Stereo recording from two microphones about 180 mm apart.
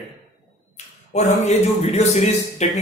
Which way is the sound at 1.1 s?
35° left (ahead or behind).